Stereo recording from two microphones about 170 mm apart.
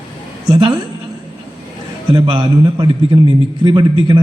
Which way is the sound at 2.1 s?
30° right (ahead or behind).